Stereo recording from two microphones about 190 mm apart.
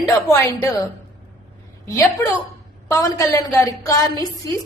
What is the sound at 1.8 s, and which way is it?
A woman's voice, 15° left (ahead or behind).